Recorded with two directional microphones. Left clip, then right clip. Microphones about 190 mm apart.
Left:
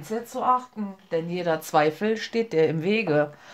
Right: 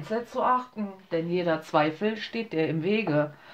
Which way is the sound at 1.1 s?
40° left (ahead or behind).